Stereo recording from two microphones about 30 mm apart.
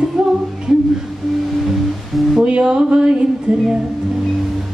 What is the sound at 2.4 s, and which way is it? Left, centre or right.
Music, right.